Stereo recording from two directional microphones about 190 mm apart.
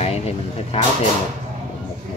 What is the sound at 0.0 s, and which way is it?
Speech, 35° left (ahead or behind).